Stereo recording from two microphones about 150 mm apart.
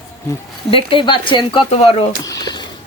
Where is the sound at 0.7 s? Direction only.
35° left (ahead or behind).